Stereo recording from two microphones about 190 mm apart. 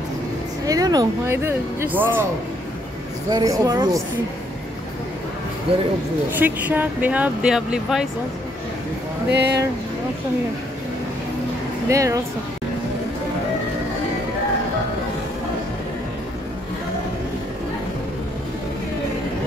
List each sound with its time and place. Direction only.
0.7 s speech: 20° right (ahead or behind)
3.3 s speech: 20° right (ahead or behind)
5.7 s speech: 30° right (ahead or behind)
6.3 s speech: 10° right (ahead or behind)
9.3 s speech: 60° right (ahead or behind)
11.9 s speech: 15° right (ahead or behind)